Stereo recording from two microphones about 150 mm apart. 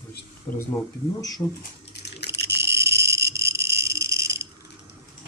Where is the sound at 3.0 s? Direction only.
90° right.